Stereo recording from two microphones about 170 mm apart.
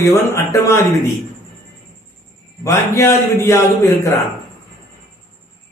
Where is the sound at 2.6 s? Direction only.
15° left (ahead or behind).